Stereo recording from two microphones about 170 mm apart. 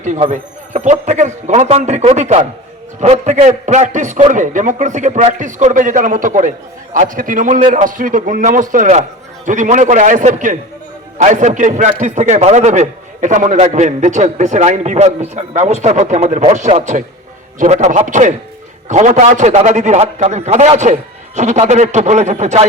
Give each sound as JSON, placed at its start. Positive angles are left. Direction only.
{"t": 0.3, "sound": "a man's voice", "side_deg": -45}